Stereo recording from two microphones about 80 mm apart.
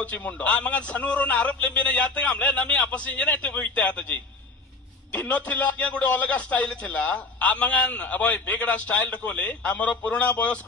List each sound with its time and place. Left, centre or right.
0.0 s a man's voice: centre